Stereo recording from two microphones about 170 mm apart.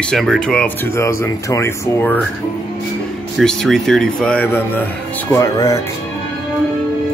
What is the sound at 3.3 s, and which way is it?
Speech, centre (ahead or behind).